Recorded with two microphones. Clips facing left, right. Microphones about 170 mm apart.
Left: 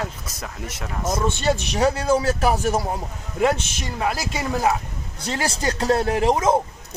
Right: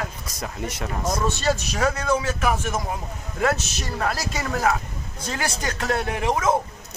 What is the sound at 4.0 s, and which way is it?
Speech, 20° left (ahead or behind).